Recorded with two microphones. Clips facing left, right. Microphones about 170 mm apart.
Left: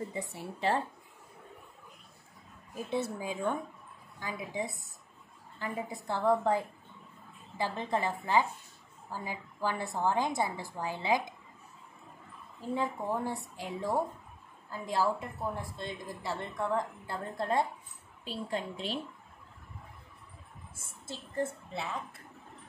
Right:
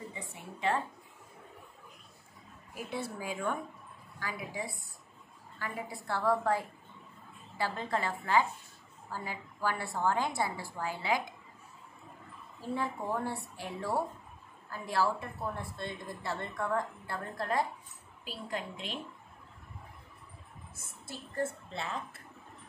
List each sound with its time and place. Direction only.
0.1 s speech: 35° left (ahead or behind)
2.7 s a woman's voice: 20° left (ahead or behind)
7.5 s a woman's voice: 20° left (ahead or behind)
12.5 s a woman's voice: 20° left (ahead or behind)
20.7 s a woman's voice: 25° left (ahead or behind)
21.6 s speech: 5° left (ahead or behind)